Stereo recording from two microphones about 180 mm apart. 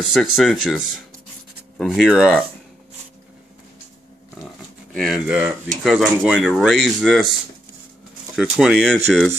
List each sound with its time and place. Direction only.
0.0 s speech: centre (ahead or behind)
4.9 s speech: centre (ahead or behind)
8.4 s speech: 5° right (ahead or behind)